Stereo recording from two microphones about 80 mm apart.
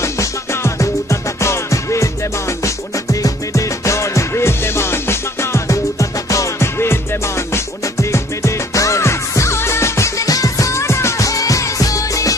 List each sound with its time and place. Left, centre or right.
0.0 s music: left